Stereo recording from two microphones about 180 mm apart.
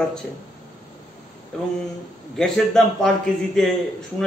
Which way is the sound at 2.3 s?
Centre (ahead or behind).